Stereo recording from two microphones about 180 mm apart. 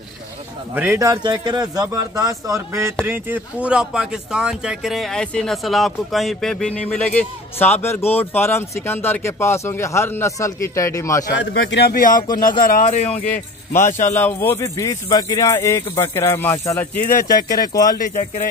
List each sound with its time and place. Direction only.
0.7 s a man's voice: 15° right (ahead or behind); by 11.3 s 15° left (ahead or behind)
11.3 s a man's voice: 70° left (ahead or behind); by 14.1 s 45° left (ahead or behind)
14.1 s speech: 10° left (ahead or behind)
17.9 s a man's voice: 50° left (ahead or behind)